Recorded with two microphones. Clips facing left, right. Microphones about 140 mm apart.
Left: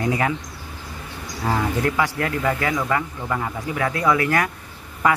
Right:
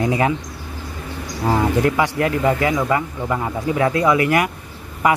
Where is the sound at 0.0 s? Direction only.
20° right (ahead or behind).